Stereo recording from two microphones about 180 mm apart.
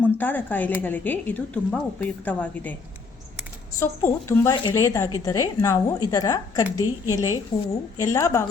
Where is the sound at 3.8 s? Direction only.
15° left (ahead or behind).